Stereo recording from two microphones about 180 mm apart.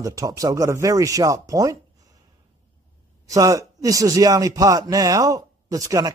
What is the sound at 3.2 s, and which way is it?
A man's voice, 20° right (ahead or behind).